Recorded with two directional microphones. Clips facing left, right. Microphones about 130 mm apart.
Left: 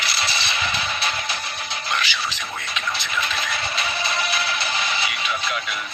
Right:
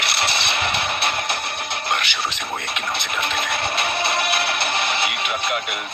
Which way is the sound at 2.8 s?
60° right (ahead or behind).